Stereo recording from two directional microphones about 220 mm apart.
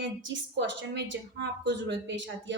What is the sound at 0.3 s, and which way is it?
A woman's voice, 55° right (ahead or behind).